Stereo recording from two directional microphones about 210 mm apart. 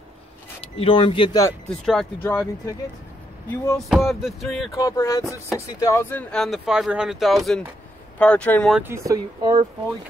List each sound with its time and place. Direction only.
0.7 s speech: 25° left (ahead or behind)
1.7 s speech: centre (ahead or behind)
3.4 s a sound: 10° left (ahead or behind)
3.9 s speech: centre (ahead or behind)
4.7 s a sound: 15° left (ahead or behind)
5.8 s speech: 15° left (ahead or behind)
8.8 s speech: 15° right (ahead or behind)